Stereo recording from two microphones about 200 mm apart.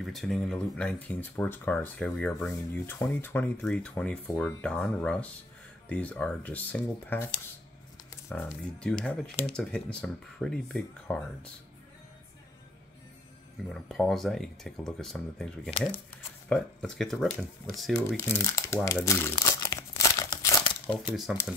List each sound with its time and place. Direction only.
0.0 s speech: centre (ahead or behind)
13.8 s speech: centre (ahead or behind)
17.9 s speech: 10° left (ahead or behind)
19.0 s crumpling: 15° left (ahead or behind)
21.0 s speech: 5° right (ahead or behind)